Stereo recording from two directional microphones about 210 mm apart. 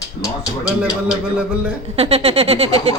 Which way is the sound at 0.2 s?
15° left (ahead or behind).